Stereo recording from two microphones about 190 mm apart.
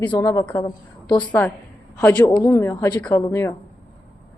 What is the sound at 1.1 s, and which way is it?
Speech, 5° left (ahead or behind).